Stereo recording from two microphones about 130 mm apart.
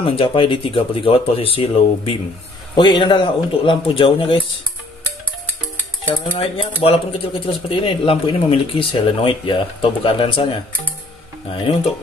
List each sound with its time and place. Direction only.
0.0 s a man's voice: 45° left (ahead or behind)
6.3 s speech: 45° left (ahead or behind)